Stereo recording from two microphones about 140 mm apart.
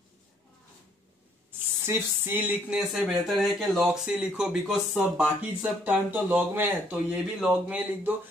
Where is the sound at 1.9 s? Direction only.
15° right (ahead or behind).